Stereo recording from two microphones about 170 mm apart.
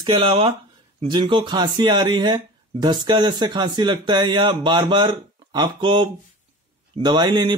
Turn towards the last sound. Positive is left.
turn(degrees=-25)  # may be behind; listen again after turning